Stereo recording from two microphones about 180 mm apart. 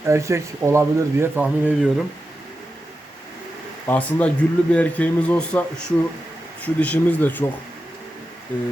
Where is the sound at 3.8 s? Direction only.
10° left (ahead or behind).